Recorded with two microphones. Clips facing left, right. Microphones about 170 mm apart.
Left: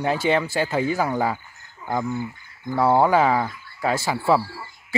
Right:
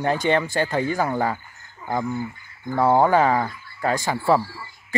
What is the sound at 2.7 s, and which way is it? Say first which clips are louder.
Speech: even; 10° right (ahead or behind).